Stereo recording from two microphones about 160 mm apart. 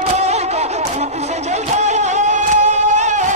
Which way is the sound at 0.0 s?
45° right (ahead or behind).